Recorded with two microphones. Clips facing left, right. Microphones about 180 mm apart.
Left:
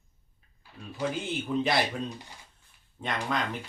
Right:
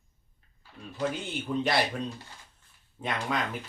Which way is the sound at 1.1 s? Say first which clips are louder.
Left 2 dB; centre (ahead or behind).